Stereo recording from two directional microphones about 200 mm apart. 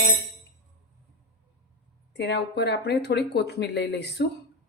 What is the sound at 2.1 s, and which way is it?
Speech, 60° left (ahead or behind).